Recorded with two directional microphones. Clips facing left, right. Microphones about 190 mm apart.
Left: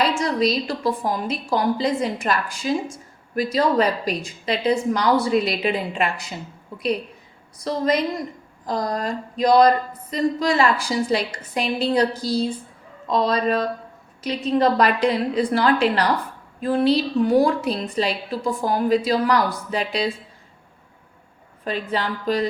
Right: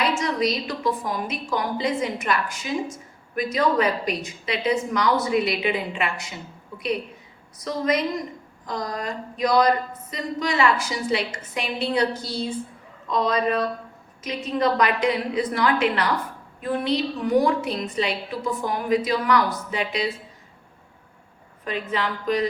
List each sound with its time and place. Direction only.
0.4 s speech: 35° left (ahead or behind)
7.6 s speech: 30° left (ahead or behind)
21.6 s speech: 35° left (ahead or behind)